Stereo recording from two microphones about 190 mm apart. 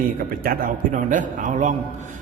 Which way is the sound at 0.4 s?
50° right (ahead or behind).